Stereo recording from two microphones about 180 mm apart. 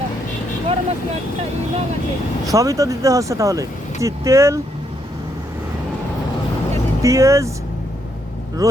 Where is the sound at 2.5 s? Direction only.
20° right (ahead or behind).